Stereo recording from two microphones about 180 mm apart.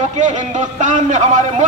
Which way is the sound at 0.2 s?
45° right (ahead or behind).